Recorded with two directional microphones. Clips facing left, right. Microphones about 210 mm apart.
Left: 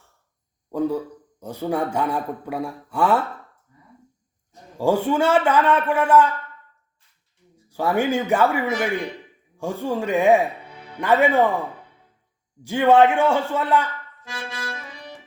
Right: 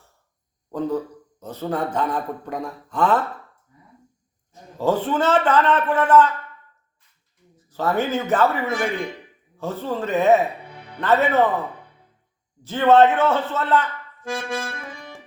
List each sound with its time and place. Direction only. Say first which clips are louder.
0.7 s a man's voice: left 1 dB; 10° left (ahead or behind)
4.8 s a man's voice: left 1 dB; 10° left (ahead or behind)
7.5 s a man's voice: left 1 dB; 10° left (ahead or behind)
12.6 s a man's voice: even; 10° left (ahead or behind)
14.3 s accordion: right 6 dB; 50° right (ahead or behind)